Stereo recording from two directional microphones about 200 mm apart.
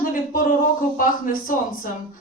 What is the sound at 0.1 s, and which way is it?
A man's voice, 45° left (ahead or behind).